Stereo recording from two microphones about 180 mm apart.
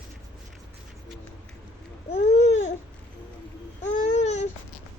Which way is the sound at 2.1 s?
40° left (ahead or behind).